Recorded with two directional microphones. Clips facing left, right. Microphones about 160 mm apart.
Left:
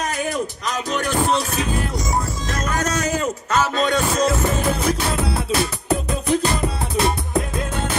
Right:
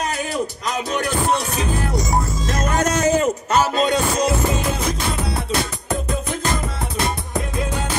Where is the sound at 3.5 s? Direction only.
35° right (ahead or behind).